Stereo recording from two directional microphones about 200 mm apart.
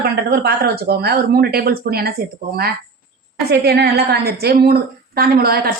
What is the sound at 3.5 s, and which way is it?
Speech, 55° right (ahead or behind).